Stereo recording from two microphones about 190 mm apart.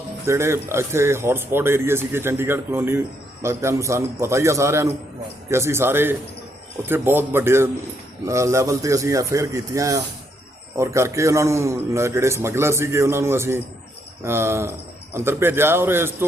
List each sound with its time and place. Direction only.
0.3 s a man's voice: 15° right (ahead or behind)